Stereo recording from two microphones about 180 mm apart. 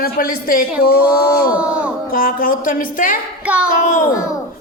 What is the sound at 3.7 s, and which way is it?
Speech, 45° left (ahead or behind).